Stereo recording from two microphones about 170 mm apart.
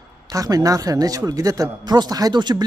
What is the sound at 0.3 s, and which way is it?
Speech, 20° right (ahead or behind).